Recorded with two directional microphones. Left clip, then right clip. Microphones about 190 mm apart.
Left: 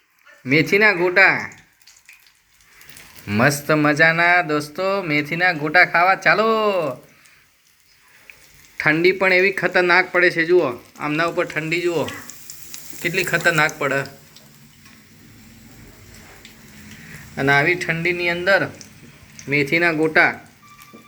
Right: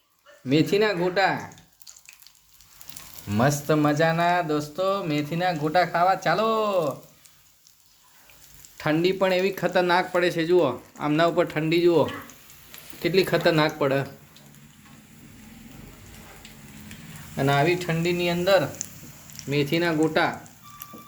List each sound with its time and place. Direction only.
0.4 s speech: 10° left (ahead or behind)
3.2 s speech: 5° left (ahead or behind)
8.8 s speech: centre (ahead or behind); by 14.1 s 25° right (ahead or behind)
17.3 s speech: 10° right (ahead or behind)